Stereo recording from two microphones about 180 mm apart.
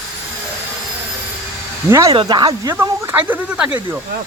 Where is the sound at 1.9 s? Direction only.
20° right (ahead or behind).